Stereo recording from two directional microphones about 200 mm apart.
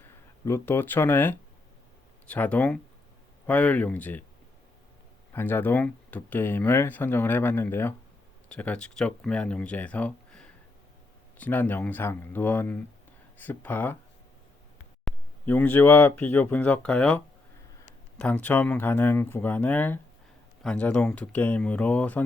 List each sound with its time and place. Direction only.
0.4 s speech: 15° left (ahead or behind)
5.3 s speech: 10° left (ahead or behind)
15.0 s speech: 10° left (ahead or behind)